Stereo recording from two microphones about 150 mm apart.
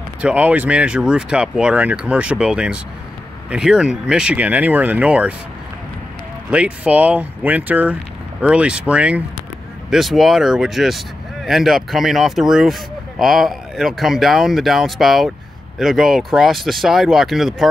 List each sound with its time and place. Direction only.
0.2 s speech: 10° right (ahead or behind)
6.5 s speech: 10° right (ahead or behind)